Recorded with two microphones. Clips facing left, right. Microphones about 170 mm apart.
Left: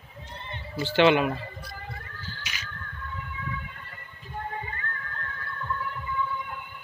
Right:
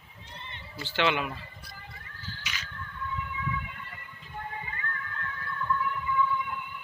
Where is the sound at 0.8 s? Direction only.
25° left (ahead or behind).